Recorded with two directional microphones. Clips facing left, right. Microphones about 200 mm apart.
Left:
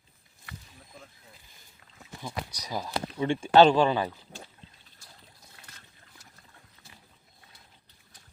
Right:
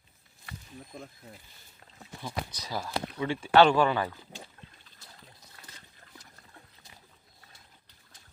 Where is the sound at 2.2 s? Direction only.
15° left (ahead or behind).